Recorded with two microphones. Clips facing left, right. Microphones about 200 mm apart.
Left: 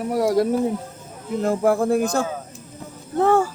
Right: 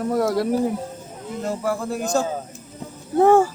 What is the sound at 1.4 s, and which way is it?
Speech, 50° left (ahead or behind).